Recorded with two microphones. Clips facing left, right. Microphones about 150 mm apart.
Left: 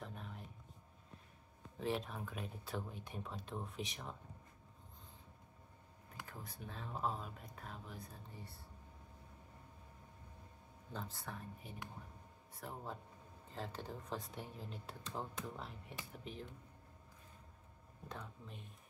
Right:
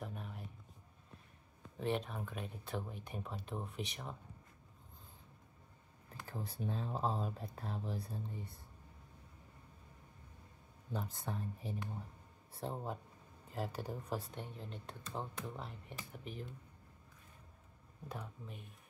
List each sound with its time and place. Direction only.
0.0 s a sound: 5° right (ahead or behind)
1.8 s speech: centre (ahead or behind)
6.2 s speech: 30° right (ahead or behind)
10.9 s speech: 15° right (ahead or behind)
14.3 s speech: 5° left (ahead or behind)
18.0 s speech: 10° right (ahead or behind)